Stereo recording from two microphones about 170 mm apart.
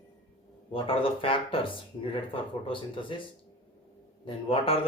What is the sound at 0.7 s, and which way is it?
Speech, 30° left (ahead or behind).